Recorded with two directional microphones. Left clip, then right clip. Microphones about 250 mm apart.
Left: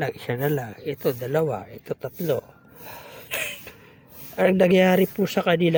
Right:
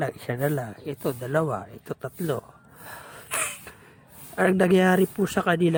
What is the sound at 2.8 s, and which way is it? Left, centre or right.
Cough, centre.